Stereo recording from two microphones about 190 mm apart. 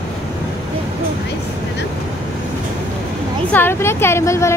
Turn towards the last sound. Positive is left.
turn(degrees=15)  # may be behind; listen again after turning